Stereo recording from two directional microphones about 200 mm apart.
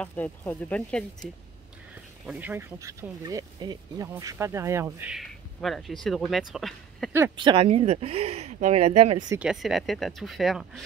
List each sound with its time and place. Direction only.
0.0 s speech: 10° left (ahead or behind)
2.2 s speech: 10° right (ahead or behind)
7.3 s speech: 25° right (ahead or behind)
9.4 s speech: centre (ahead or behind)